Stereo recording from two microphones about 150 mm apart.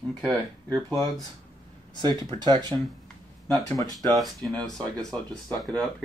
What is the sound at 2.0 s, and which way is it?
Speech, 30° right (ahead or behind).